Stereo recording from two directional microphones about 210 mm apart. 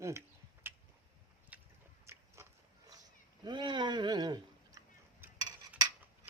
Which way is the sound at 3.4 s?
20° right (ahead or behind).